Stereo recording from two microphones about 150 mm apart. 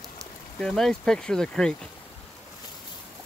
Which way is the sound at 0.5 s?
5° left (ahead or behind).